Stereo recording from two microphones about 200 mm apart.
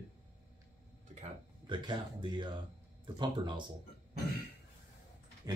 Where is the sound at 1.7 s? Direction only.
25° right (ahead or behind).